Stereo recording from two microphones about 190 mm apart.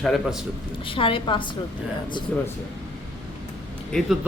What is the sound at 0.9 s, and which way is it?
Speech, 25° left (ahead or behind).